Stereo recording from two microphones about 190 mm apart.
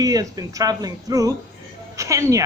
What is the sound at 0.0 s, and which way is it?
A woman's voice, 20° right (ahead or behind).